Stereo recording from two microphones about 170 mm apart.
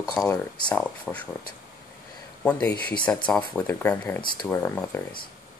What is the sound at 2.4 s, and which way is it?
Speech, 10° left (ahead or behind).